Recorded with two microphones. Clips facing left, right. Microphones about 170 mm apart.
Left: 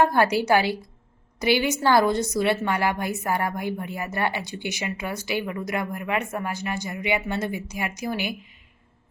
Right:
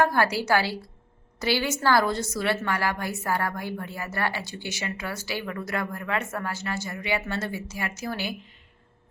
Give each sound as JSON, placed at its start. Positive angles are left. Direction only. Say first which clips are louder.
{"t": 0.0, "sound": "a woman's voice", "louder": "left 3 dB", "side_deg": 20}